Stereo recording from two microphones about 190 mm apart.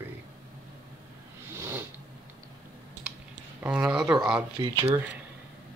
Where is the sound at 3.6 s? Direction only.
10° right (ahead or behind).